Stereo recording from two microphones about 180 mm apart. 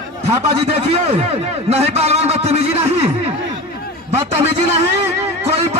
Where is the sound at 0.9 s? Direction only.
35° right (ahead or behind).